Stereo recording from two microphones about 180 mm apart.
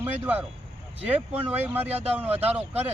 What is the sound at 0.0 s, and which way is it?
Speech, 10° right (ahead or behind).